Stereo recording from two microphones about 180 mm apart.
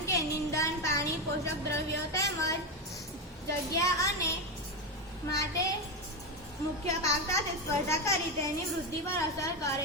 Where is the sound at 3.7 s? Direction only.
20° left (ahead or behind).